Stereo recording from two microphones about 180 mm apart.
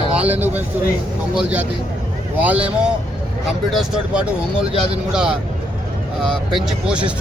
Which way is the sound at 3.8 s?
5° right (ahead or behind).